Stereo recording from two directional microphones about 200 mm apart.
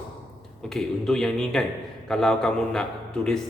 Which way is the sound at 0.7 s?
Centre (ahead or behind).